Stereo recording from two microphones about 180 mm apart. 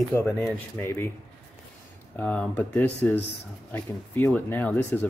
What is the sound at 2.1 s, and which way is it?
Speech, 5° left (ahead or behind).